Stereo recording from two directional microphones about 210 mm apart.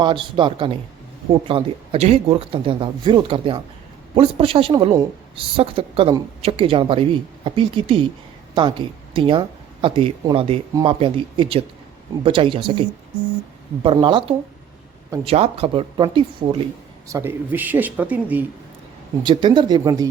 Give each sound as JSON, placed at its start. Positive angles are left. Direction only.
{"t": 0.0, "sound": "speech", "side_deg": -25}
{"t": 13.8, "sound": "speech", "side_deg": -20}
{"t": 17.1, "sound": "speech", "side_deg": -10}
{"t": 19.2, "sound": "speech", "side_deg": -20}